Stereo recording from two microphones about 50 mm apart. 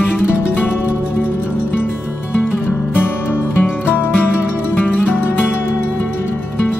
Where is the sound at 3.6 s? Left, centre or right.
Left.